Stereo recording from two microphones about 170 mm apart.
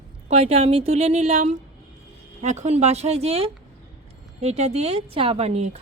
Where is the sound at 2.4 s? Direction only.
45° right (ahead or behind).